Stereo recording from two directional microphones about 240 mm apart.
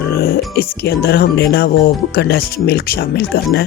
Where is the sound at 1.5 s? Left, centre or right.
Left.